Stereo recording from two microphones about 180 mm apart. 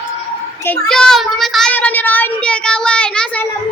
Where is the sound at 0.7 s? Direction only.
5° left (ahead or behind).